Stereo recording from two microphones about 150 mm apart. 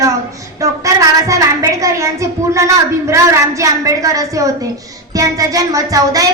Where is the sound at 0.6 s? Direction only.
20° right (ahead or behind).